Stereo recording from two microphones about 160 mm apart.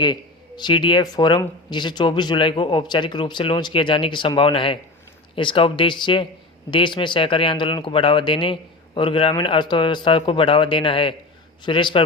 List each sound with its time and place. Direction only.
0.0 s speech: 25° left (ahead or behind)